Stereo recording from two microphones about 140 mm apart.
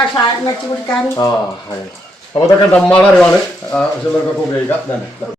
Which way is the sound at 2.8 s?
5° left (ahead or behind).